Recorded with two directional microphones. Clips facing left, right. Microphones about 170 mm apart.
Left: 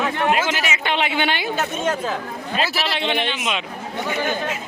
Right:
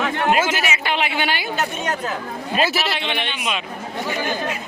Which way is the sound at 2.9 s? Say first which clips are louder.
Left 3 dB; 30° left (ahead or behind).